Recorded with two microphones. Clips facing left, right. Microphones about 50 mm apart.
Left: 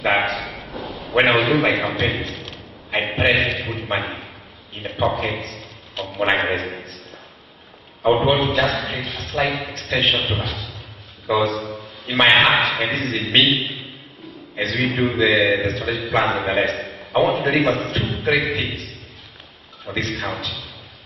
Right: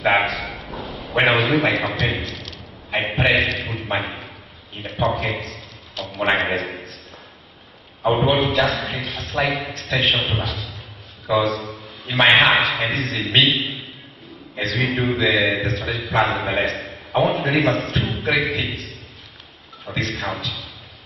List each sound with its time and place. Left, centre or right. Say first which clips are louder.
0.0 s a man's voice: right 1 dB; centre
8.0 s a man's voice: left 1 dB; centre
17.6 s a man's voice: even; left
17.9 s a man's voice: left 1 dB; centre
19.9 s a man's voice: left 1 dB; centre